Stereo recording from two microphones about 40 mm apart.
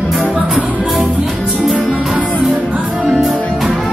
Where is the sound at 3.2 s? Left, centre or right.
Centre.